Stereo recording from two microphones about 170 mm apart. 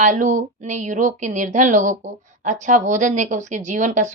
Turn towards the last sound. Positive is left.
turn(degrees=-45)  # may be behind; listen again after turning